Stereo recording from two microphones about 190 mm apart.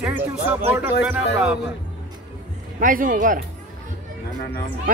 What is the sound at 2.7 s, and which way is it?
Speech, 45° right (ahead or behind).